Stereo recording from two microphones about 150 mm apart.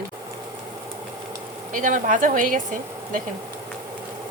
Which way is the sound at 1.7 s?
60° right (ahead or behind).